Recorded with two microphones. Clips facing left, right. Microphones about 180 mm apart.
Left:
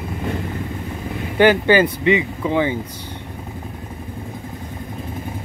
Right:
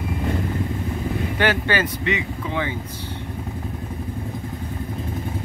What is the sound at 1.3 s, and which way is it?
Speech, 15° left (ahead or behind).